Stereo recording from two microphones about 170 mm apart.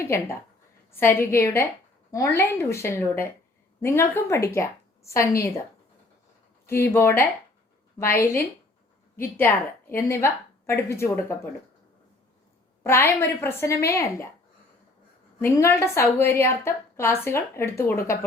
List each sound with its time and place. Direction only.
0.0 s a woman's voice: 15° left (ahead or behind)
6.7 s a woman's voice: 15° left (ahead or behind)
9.2 s a woman's voice: 15° left (ahead or behind)
12.8 s a woman's voice: 15° left (ahead or behind)
15.4 s a woman's voice: 15° left (ahead or behind)